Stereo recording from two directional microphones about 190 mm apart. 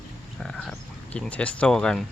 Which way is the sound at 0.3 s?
5° left (ahead or behind).